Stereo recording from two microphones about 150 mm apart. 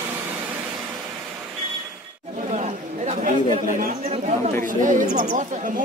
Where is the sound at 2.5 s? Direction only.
50° right (ahead or behind).